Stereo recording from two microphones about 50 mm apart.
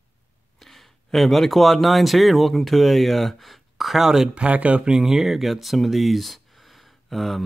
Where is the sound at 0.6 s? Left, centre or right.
Centre.